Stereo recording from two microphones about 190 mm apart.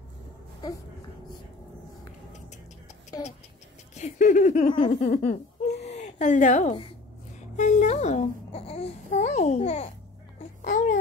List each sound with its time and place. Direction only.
3.9 s laughter: 40° left (ahead or behind)
7.3 s babbling: 40° left (ahead or behind)
10.6 s a sound: 40° left (ahead or behind)